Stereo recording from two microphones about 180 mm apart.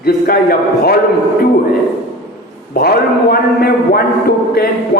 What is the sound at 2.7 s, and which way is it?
A man's voice, 55° left (ahead or behind).